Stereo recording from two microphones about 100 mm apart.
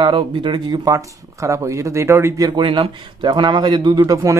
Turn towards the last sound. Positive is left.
turn(degrees=-35)  # may be behind; listen again after turning